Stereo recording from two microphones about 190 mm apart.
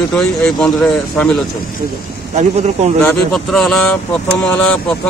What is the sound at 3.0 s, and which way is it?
Speech, 5° left (ahead or behind).